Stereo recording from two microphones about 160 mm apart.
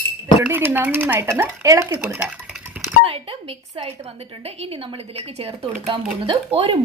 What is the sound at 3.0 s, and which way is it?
A woman's voice, 35° right (ahead or behind).